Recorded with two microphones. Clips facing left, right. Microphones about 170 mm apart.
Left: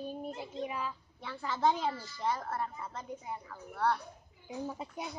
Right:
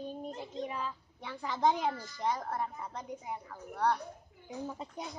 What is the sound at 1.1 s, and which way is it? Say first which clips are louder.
Speech: even; 15° right (ahead or behind).